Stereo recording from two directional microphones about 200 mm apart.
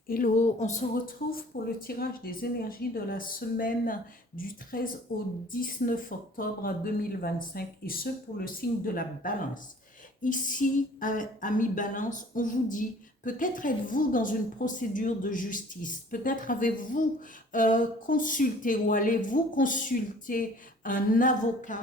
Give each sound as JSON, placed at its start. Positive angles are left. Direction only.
{"t": 0.1, "sound": "a woman's voice", "side_deg": 40}